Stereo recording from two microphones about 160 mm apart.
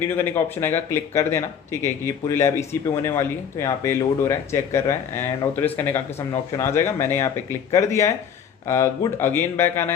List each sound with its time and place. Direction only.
0.2 s speech: 15° left (ahead or behind)